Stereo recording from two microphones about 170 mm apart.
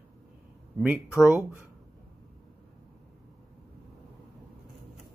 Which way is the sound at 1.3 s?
10° right (ahead or behind).